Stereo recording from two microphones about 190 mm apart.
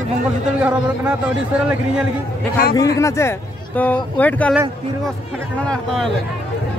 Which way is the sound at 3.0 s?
15° left (ahead or behind).